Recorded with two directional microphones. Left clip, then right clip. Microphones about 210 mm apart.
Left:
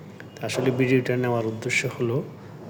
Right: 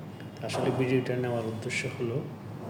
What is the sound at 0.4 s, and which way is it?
Speech, 55° left (ahead or behind).